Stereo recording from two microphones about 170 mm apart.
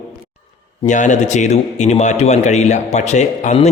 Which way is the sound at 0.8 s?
45° left (ahead or behind).